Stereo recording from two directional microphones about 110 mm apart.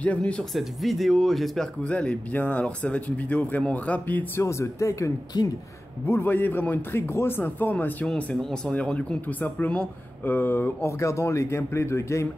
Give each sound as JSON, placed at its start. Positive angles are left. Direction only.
{"t": 0.0, "sound": "speech", "side_deg": 10}
{"t": 4.4, "sound": "speech", "side_deg": 25}
{"t": 6.0, "sound": "speech", "side_deg": 20}